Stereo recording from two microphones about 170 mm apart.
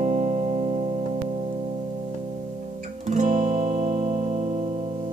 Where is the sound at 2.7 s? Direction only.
45° right (ahead or behind).